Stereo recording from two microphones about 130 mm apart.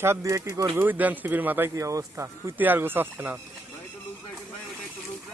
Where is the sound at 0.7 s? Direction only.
15° right (ahead or behind).